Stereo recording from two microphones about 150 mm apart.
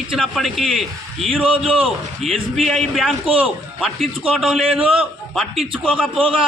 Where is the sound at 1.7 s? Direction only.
40° right (ahead or behind).